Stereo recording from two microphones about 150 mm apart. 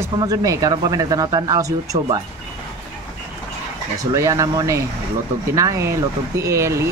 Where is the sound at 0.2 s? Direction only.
25° right (ahead or behind).